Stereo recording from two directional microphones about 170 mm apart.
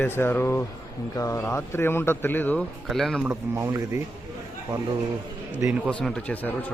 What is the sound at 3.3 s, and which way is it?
Speech, 20° right (ahead or behind).